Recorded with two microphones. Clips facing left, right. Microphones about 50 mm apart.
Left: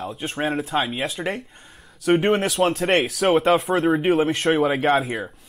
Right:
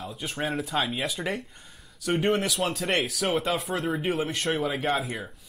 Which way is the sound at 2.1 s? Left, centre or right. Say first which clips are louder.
Left 6 dB; left.